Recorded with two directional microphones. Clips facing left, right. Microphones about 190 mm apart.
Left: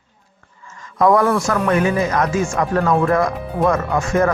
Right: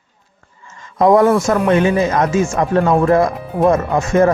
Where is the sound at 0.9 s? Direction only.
25° right (ahead or behind).